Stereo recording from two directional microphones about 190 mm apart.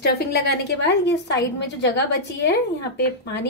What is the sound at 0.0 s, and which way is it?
A woman's voice, 60° left (ahead or behind).